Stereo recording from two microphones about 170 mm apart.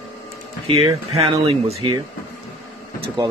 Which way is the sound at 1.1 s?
35° right (ahead or behind).